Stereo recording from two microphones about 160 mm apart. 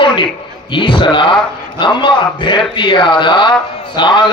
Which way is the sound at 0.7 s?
30° left (ahead or behind).